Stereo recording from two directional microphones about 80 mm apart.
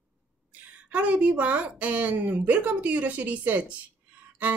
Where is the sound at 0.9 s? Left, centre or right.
Centre.